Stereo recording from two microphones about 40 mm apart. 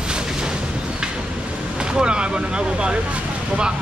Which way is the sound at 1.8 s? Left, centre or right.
Right.